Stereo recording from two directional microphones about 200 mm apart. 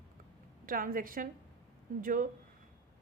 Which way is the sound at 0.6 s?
45° right (ahead or behind).